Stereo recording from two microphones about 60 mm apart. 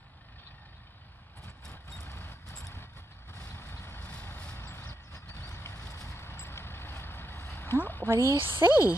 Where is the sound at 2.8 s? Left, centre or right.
Left.